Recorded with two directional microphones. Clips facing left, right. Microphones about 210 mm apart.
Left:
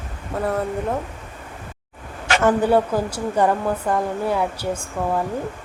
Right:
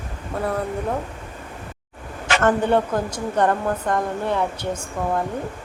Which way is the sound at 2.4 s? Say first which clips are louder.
Left 2 dB; 5° left (ahead or behind).